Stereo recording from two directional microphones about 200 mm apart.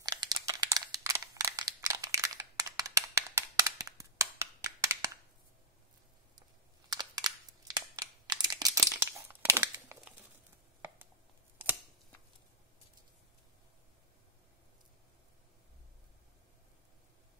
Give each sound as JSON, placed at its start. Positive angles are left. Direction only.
{"t": 0.0, "sound": "crumpling", "side_deg": -20}
{"t": 4.8, "sound": "a sound", "side_deg": -15}
{"t": 6.9, "sound": "crumpling", "side_deg": -20}
{"t": 11.6, "sound": "scissors", "side_deg": -10}